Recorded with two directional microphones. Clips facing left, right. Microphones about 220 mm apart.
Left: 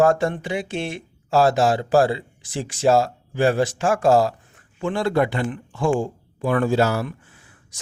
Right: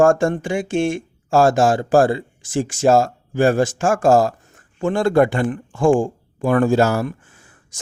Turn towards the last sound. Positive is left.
turn(degrees=-45)  # may be behind; listen again after turning